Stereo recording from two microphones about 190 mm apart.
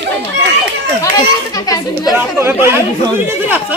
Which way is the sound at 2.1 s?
10° right (ahead or behind).